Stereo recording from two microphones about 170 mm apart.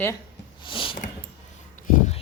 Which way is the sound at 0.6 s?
30° left (ahead or behind).